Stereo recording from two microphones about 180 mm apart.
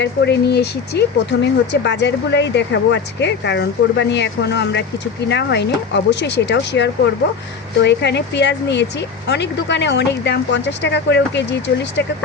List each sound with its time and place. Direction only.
0.0 s speech: 65° left (ahead or behind)